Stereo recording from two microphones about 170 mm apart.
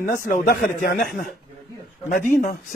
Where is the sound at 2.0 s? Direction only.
50° left (ahead or behind).